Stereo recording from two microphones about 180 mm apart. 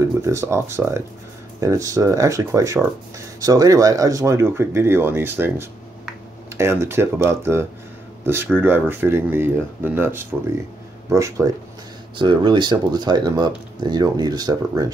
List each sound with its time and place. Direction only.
0.0 s speech: 15° right (ahead or behind)